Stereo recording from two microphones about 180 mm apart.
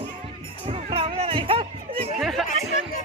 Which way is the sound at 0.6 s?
30° right (ahead or behind).